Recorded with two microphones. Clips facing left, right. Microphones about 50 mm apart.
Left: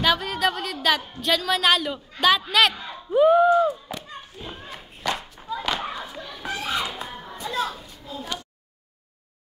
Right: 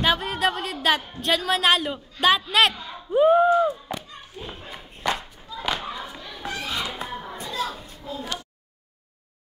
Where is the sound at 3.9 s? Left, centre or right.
Centre.